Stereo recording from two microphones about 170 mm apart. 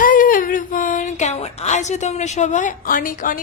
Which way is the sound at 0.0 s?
55° left (ahead or behind).